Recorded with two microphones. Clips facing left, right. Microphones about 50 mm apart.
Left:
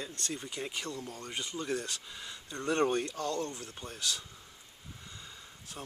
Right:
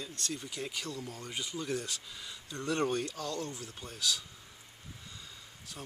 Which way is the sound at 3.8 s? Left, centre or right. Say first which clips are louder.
Right 2 dB; centre.